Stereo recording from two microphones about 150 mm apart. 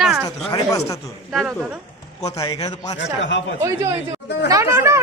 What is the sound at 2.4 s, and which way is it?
Speech, 25° left (ahead or behind).